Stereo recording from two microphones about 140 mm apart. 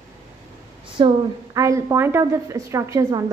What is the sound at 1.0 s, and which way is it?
Speech, 35° right (ahead or behind).